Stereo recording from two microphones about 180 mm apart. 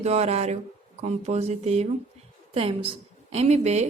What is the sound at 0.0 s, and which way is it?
A woman's voice, 35° right (ahead or behind).